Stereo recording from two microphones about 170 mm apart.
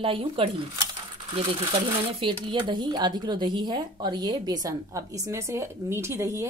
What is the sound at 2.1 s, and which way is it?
Speech, 30° right (ahead or behind).